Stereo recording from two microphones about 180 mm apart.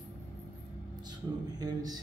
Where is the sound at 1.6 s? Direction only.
20° right (ahead or behind).